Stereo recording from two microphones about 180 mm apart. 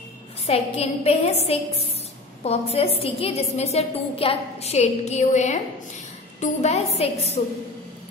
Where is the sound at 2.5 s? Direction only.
35° left (ahead or behind).